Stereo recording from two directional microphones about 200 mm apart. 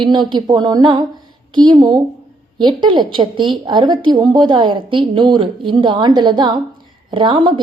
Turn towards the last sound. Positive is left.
turn(degrees=-25)  # may be behind; listen again after turning